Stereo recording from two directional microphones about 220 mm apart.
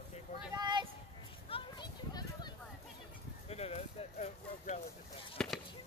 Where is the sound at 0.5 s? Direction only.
20° right (ahead or behind).